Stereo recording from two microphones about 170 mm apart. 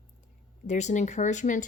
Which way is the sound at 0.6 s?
45° left (ahead or behind).